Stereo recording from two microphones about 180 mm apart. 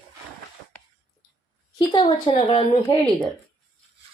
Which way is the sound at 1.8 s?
30° left (ahead or behind).